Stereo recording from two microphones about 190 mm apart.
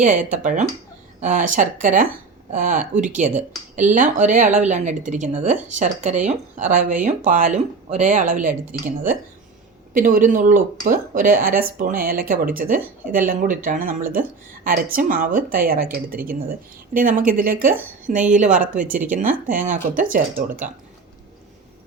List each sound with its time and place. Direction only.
0.2 s a woman's voice: 40° right (ahead or behind)
9.9 s a woman's voice: 45° right (ahead or behind)